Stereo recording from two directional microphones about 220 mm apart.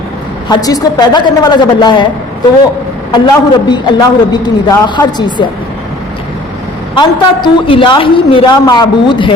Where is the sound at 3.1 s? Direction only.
20° left (ahead or behind).